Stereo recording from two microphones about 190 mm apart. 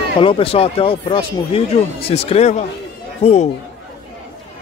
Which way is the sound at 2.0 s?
30° left (ahead or behind).